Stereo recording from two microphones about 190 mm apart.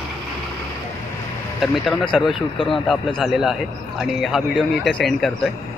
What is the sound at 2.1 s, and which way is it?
A man's voice, centre (ahead or behind).